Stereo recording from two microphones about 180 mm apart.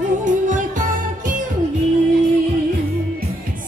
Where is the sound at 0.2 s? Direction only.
45° right (ahead or behind).